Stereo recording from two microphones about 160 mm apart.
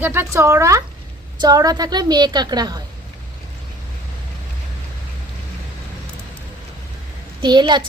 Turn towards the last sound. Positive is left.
turn(degrees=-30)  # may be behind; listen again after turning